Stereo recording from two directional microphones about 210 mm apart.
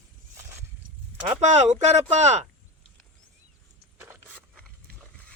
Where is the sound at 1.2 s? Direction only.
35° right (ahead or behind).